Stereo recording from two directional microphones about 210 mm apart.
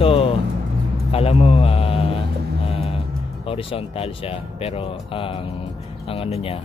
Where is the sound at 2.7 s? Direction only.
25° left (ahead or behind).